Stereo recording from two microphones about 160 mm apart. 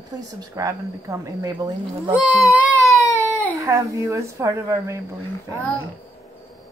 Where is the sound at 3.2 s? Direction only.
10° left (ahead or behind).